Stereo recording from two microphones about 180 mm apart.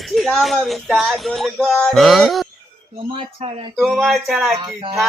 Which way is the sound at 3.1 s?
30° right (ahead or behind).